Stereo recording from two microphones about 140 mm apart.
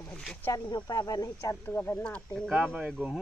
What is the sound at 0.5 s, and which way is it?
Speech, 30° left (ahead or behind).